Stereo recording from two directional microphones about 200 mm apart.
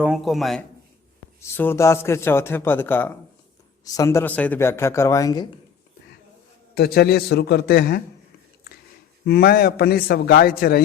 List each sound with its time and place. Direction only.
0.0 s speech: centre (ahead or behind)
1.4 s a man's voice: 10° left (ahead or behind)
6.7 s a man's voice: 50° left (ahead or behind)
9.2 s a man's voice: 50° left (ahead or behind)